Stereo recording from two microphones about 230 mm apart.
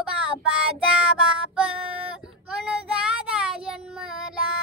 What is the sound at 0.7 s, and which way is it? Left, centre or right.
Child singing, centre.